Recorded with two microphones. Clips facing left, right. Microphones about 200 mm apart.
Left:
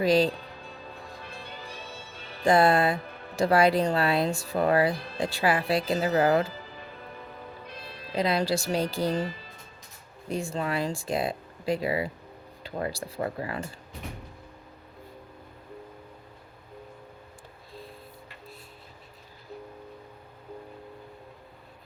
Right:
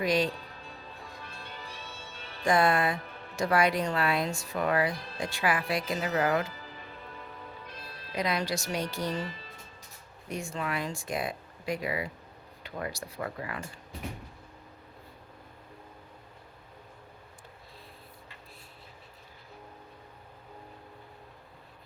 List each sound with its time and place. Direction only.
0.0 s speech: 30° left (ahead or behind)
2.4 s speech: 30° left (ahead or behind)
8.1 s speech: 30° left (ahead or behind)